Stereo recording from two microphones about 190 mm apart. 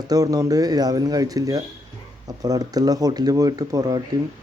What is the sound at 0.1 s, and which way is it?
Speech, 20° right (ahead or behind).